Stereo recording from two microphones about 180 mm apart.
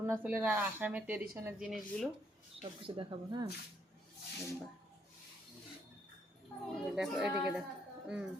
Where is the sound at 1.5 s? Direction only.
Centre (ahead or behind).